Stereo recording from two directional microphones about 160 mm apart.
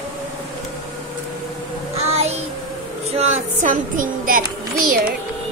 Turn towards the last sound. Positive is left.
turn(degrees=-60)  # may be behind; listen again after turning